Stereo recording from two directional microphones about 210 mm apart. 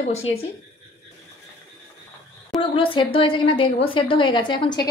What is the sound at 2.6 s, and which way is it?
A woman's voice, 25° left (ahead or behind).